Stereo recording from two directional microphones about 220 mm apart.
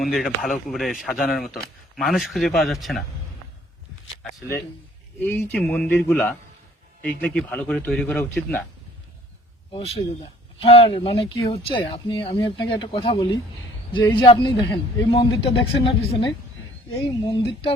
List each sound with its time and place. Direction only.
0.0 s speech: centre (ahead or behind)
5.2 s speech: 10° left (ahead or behind)
9.7 s speech: 30° left (ahead or behind)